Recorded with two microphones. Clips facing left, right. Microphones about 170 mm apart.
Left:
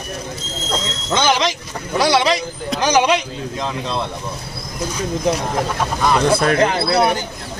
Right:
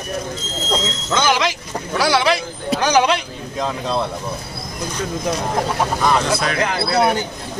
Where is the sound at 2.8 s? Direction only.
15° left (ahead or behind).